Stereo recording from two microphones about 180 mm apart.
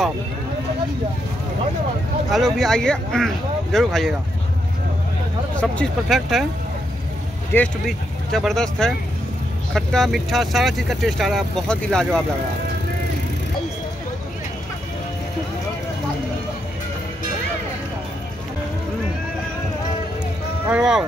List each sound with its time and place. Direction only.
2.3 s speech: centre (ahead or behind)
5.6 s speech: 5° left (ahead or behind)
7.5 s speech: 5° left (ahead or behind)
20.6 s speech: 5° right (ahead or behind)